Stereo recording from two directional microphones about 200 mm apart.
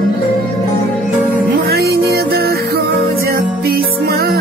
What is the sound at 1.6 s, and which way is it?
Music, 50° right (ahead or behind).